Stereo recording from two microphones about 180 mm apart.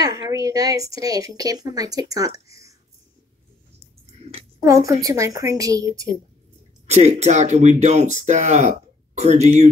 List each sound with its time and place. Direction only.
0.0 s a woman's voice: 20° right (ahead or behind)
4.6 s a woman's voice: 20° right (ahead or behind)
6.9 s speech: 35° right (ahead or behind)